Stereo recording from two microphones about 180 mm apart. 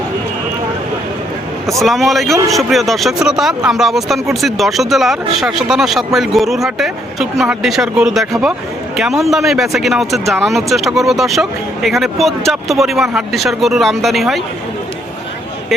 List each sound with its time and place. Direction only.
1.8 s a man's voice: centre (ahead or behind)